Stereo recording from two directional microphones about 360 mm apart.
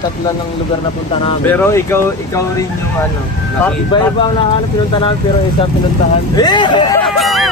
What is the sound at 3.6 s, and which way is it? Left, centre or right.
Speech, centre.